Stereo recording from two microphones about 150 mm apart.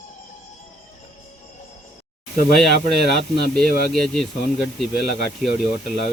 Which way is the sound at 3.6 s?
90° right.